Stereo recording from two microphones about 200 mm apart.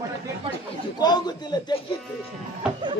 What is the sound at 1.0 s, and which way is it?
Speech, 20° left (ahead or behind).